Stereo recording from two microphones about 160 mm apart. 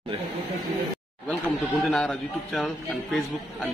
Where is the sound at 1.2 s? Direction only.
5° left (ahead or behind).